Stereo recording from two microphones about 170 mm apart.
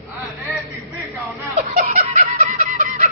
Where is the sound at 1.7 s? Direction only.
50° right (ahead or behind).